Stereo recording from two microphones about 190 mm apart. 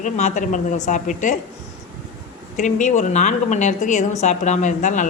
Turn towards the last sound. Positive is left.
turn(degrees=40)  # may be behind; listen again after turning